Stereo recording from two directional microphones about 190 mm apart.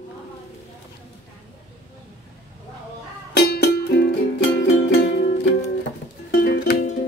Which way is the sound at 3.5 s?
60° left (ahead or behind).